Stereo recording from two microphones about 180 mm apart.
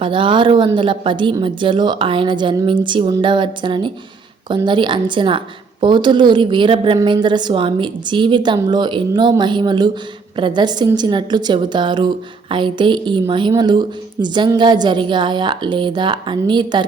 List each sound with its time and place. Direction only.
0.0 s a woman's voice: 30° right (ahead or behind)